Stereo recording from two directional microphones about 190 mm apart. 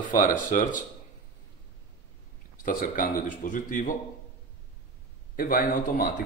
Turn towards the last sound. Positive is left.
turn(degrees=45)  # may be behind; listen again after turning